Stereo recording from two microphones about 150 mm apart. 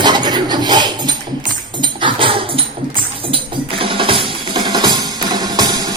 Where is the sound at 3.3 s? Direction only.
35° right (ahead or behind).